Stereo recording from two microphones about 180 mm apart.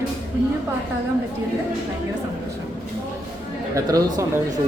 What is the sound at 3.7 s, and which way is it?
Speech, 20° right (ahead or behind).